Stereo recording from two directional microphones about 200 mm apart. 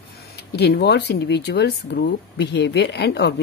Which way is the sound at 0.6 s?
55° left (ahead or behind).